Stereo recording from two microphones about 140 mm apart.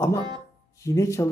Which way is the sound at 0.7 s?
20° left (ahead or behind).